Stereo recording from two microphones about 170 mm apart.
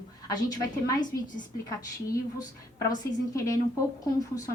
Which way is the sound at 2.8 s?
20° left (ahead or behind).